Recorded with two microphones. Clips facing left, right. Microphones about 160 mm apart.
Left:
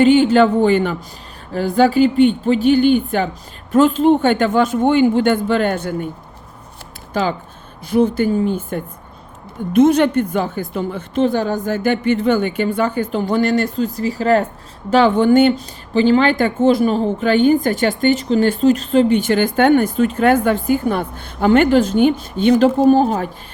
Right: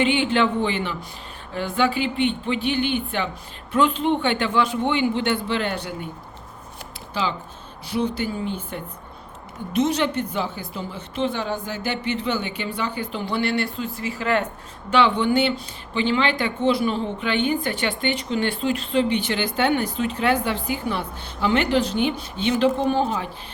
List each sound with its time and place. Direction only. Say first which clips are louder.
0.0 s speech: left 9 dB; 40° left (ahead or behind)
7.1 s speech: left 7 dB; 50° left (ahead or behind)